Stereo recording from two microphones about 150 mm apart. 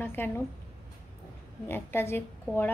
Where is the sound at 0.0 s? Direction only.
15° left (ahead or behind).